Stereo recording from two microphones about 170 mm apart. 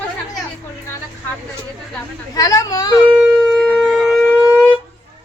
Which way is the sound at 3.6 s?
Centre (ahead or behind).